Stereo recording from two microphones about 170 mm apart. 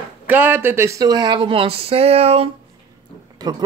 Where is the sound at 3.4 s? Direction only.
25° right (ahead or behind).